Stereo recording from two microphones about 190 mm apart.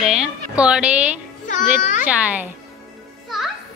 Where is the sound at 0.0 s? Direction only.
5° right (ahead or behind).